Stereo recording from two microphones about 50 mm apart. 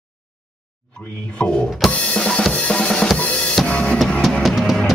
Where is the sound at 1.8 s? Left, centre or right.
Centre.